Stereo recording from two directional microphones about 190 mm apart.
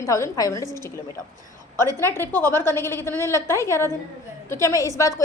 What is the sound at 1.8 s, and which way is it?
A woman's voice, 15° left (ahead or behind).